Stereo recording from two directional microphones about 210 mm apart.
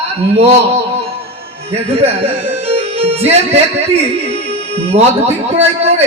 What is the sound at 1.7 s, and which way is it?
A man's voice, 30° right (ahead or behind).